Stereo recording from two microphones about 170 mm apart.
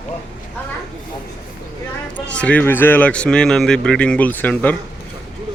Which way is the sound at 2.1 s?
5° left (ahead or behind).